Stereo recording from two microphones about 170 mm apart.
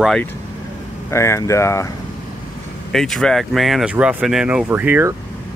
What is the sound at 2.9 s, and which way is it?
Speech, centre (ahead or behind).